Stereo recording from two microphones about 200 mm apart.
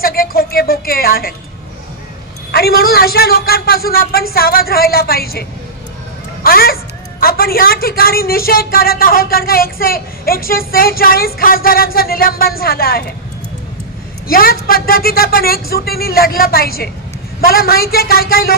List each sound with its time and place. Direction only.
0.0 s a woman's voice: 45° left (ahead or behind)
2.5 s a woman's voice: 50° left (ahead or behind)
6.4 s a woman's voice: 50° left (ahead or behind)
14.2 s a woman's voice: 45° left (ahead or behind)